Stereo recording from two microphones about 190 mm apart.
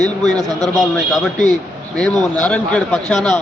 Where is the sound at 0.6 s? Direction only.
Centre (ahead or behind).